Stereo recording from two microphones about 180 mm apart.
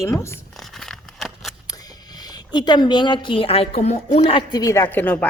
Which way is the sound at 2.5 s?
25° left (ahead or behind).